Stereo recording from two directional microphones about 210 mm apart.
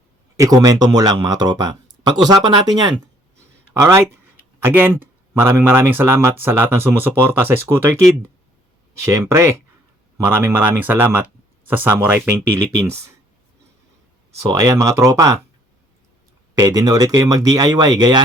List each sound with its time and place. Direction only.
0.3 s speech: 15° right (ahead or behind)
9.0 s speech: 10° right (ahead or behind)
14.5 s speech: 15° right (ahead or behind)
16.6 s speech: 15° right (ahead or behind)